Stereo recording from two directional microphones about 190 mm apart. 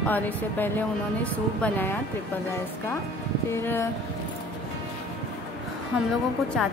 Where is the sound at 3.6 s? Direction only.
15° left (ahead or behind).